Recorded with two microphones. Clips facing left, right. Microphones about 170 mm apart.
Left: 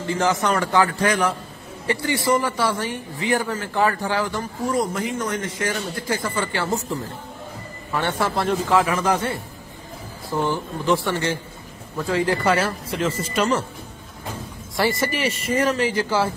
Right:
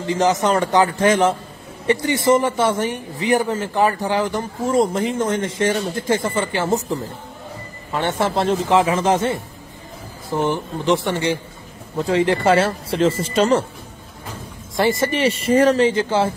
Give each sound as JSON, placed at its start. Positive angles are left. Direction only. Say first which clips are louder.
{"t": 0.0, "sound": "speech", "louder": "right 4 dB", "side_deg": -20}
{"t": 14.8, "sound": "speech", "louder": "right 4 dB", "side_deg": -25}